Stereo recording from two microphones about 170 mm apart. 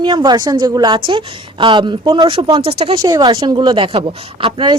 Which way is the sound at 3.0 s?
20° right (ahead or behind).